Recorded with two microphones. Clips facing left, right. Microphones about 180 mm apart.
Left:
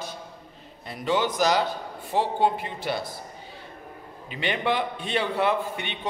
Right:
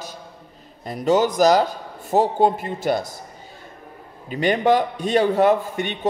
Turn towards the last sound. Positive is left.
turn(degrees=-45)  # may be behind; listen again after turning